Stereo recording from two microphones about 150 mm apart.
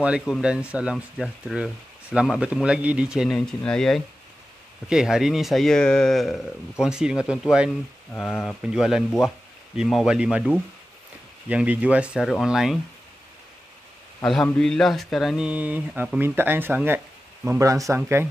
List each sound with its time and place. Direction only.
0.0 s speech: 5° right (ahead or behind)
8.1 s speech: 10° left (ahead or behind)
8.6 s speech: 5° right (ahead or behind)
14.2 s speech: 5° left (ahead or behind); by 18.3 s 15° right (ahead or behind)